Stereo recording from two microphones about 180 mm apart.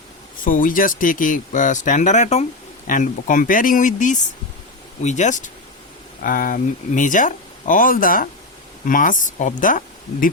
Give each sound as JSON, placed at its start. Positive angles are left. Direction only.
{"t": 0.4, "sound": "speech", "side_deg": 50}